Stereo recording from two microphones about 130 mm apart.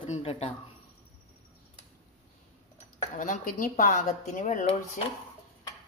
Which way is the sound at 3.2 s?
90° left.